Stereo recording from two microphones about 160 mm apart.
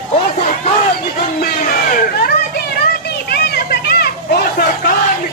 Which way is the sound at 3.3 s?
85° left.